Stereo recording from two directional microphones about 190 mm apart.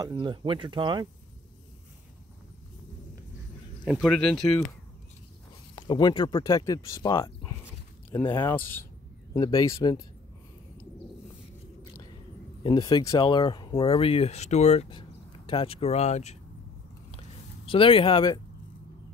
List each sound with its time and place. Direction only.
0.0 s speech: 25° right (ahead or behind)
3.8 s speech: 5° right (ahead or behind)
5.8 s speech: 25° left (ahead or behind)
9.3 s speech: 20° left (ahead or behind)
12.6 s speech: 20° left (ahead or behind)
17.6 s speech: 30° left (ahead or behind)